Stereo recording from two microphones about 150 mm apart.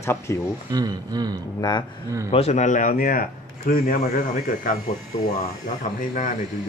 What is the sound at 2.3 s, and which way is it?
Speech, 45° left (ahead or behind).